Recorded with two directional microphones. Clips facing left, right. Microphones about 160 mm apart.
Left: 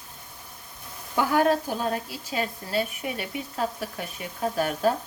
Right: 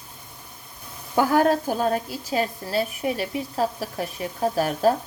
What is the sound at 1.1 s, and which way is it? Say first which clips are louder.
Speech: right 3 dB; 40° right (ahead or behind).